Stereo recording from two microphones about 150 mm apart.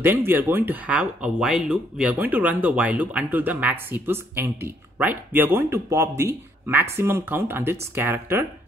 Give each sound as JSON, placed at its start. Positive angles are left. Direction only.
{"t": 0.0, "sound": "speech", "side_deg": -15}